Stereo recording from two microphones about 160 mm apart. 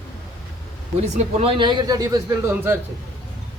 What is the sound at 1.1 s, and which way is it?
Speech, 35° right (ahead or behind).